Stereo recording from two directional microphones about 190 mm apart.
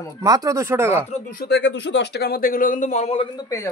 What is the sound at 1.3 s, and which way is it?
Speech, 60° left (ahead or behind).